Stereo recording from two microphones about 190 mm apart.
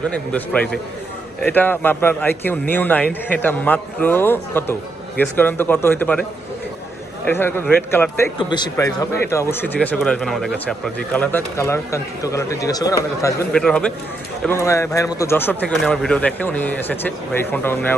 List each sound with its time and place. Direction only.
0.1 s a man's voice: 5° left (ahead or behind)
7.3 s a man's voice: 10° left (ahead or behind)
8.4 s a man's voice: 25° left (ahead or behind)
13.5 s a man's voice: 5° left (ahead or behind)